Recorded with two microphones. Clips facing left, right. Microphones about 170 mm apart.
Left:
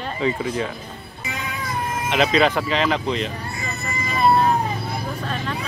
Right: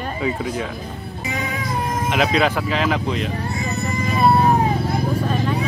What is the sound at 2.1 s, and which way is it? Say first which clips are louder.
Speech: left 1 dB; 5° right (ahead or behind).